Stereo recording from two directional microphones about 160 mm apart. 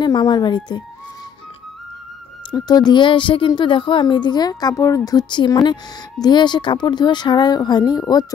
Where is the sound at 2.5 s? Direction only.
25° left (ahead or behind).